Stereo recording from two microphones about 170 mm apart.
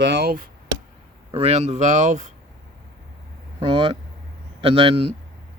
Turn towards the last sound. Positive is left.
turn(degrees=-30)  # may be behind; listen again after turning